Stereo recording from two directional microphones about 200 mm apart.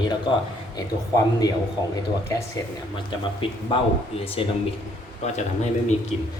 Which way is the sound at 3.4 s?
25° left (ahead or behind).